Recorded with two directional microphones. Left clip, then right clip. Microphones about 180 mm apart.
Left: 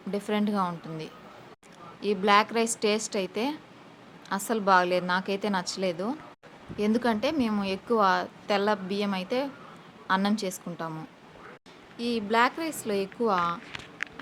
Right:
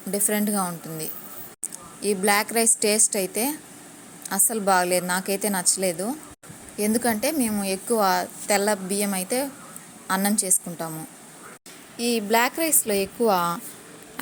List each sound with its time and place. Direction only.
0.1 s a woman's voice: 10° right (ahead or behind)
11.9 s a woman's voice: 15° right (ahead or behind)